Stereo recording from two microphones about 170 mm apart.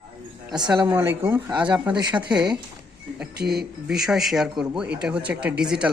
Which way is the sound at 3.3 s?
70° right (ahead or behind).